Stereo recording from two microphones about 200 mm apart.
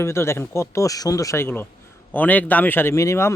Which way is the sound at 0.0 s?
15° left (ahead or behind).